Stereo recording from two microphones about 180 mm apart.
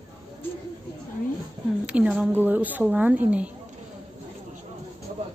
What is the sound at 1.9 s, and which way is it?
A woman's voice, 5° right (ahead or behind).